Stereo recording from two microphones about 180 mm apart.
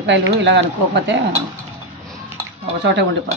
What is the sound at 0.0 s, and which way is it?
Speech, 80° right.